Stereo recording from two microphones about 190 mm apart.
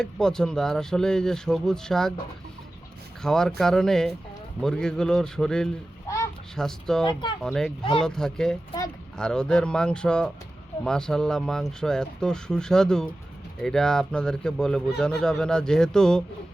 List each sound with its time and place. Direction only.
0.0 s speech: 5° left (ahead or behind)
3.2 s speech: 5° left (ahead or behind)
7.0 s speech: 25° left (ahead or behind)
7.4 s speech: centre (ahead or behind)